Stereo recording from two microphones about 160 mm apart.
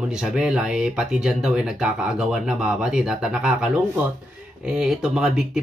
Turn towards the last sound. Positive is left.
turn(degrees=-5)  # may be behind; listen again after turning